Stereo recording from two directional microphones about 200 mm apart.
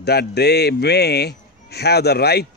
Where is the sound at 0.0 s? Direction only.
55° left (ahead or behind).